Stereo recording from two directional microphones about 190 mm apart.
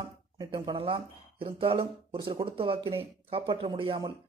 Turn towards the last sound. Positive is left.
turn(degrees=-30)  # may be behind; listen again after turning